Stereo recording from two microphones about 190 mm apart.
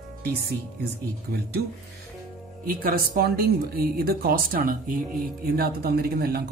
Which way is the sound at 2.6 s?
50° right (ahead or behind).